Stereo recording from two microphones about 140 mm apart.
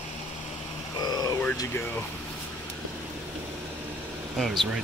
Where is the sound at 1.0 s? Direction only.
30° left (ahead or behind).